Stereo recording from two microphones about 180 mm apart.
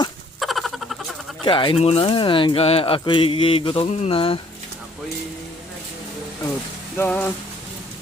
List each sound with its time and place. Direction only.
0.3 s rodents: centre (ahead or behind)
1.5 s speech: 25° left (ahead or behind)
6.9 s a sound: 10° left (ahead or behind)